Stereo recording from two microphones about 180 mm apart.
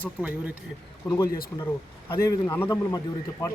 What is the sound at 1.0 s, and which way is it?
A man's voice, 20° left (ahead or behind).